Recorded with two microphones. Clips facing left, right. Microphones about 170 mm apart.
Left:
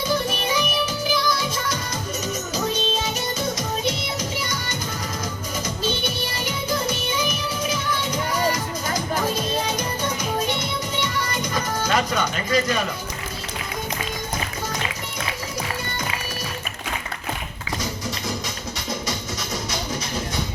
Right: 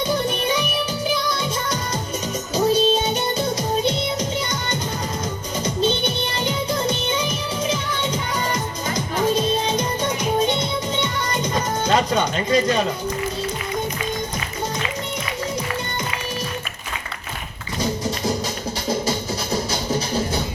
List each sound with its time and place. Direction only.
0.3 s music: 30° right (ahead or behind)
6.3 s music: 30° right (ahead or behind)
10.6 s music: 30° right (ahead or behind)
19.9 s music: 30° right (ahead or behind)